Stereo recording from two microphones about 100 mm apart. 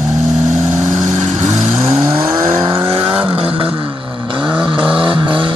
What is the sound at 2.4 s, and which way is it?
Vehicle, 25° right (ahead or behind).